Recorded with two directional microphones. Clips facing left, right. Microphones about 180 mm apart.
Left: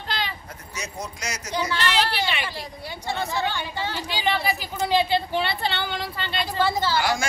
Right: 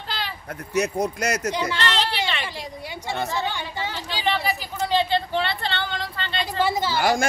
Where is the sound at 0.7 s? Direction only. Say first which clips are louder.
Right 12 dB; 60° right (ahead or behind).